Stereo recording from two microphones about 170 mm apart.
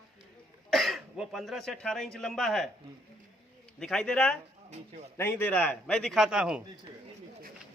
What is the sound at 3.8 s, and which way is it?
A man's voice, 5° left (ahead or behind).